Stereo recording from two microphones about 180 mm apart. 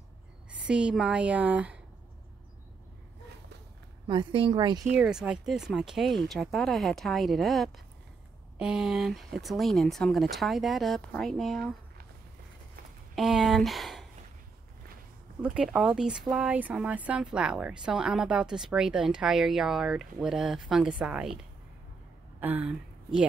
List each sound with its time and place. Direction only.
0.5 s a woman's voice: 5° right (ahead or behind)
4.1 s speech: 25° right (ahead or behind)
4.9 s speech: 5° right (ahead or behind)
13.1 s speech: centre (ahead or behind)
15.4 s speech: 5° right (ahead or behind)
22.4 s speech: 10° right (ahead or behind)